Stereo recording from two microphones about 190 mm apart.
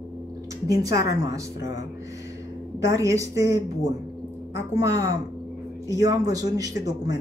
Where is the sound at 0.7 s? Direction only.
20° right (ahead or behind).